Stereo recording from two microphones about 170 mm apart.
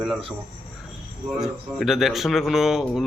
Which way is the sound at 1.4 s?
Centre (ahead or behind).